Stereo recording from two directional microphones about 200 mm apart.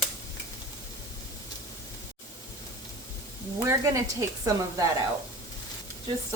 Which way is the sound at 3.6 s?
15° right (ahead or behind).